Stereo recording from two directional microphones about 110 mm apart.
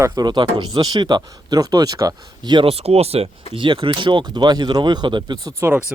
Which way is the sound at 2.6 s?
65° right (ahead or behind).